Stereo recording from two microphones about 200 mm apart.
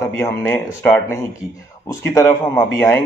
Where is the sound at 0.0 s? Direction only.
15° left (ahead or behind).